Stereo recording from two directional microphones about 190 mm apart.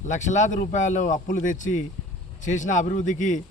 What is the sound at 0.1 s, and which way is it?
A man's voice, 40° left (ahead or behind).